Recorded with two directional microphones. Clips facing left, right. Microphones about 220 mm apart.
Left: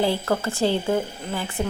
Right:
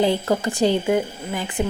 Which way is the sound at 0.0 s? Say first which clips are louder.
Right 3 dB; 15° right (ahead or behind).